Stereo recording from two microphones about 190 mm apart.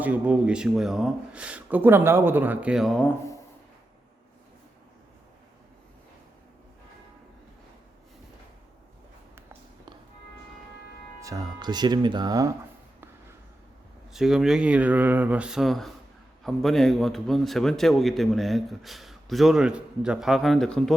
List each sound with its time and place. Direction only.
0.0 s speech: 5° right (ahead or behind)
9.3 s a sound: 10° right (ahead or behind)
11.2 s speech: 20° right (ahead or behind)
14.1 s a man's voice: centre (ahead or behind)